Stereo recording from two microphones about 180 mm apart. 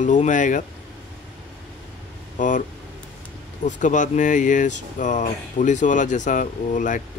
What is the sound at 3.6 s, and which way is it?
Speech, 45° left (ahead or behind).